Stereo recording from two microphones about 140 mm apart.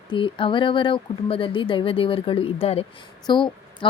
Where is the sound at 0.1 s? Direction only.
40° left (ahead or behind).